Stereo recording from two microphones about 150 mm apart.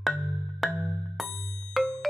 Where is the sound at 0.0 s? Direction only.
Centre (ahead or behind).